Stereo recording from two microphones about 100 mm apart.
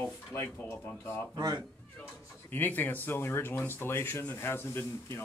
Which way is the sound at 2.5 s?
20° left (ahead or behind).